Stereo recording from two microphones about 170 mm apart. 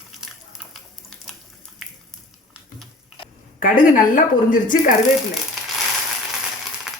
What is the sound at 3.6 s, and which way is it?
A woman's voice, 50° left (ahead or behind).